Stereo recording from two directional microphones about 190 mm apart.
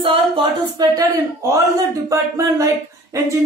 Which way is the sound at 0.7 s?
20° right (ahead or behind).